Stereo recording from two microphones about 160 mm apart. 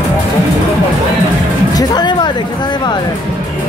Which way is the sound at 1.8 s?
25° left (ahead or behind).